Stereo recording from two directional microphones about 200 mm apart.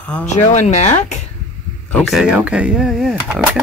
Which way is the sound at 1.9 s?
Centre (ahead or behind).